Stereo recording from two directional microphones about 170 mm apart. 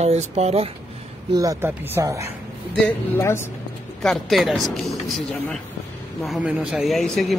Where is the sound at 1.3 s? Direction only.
20° right (ahead or behind).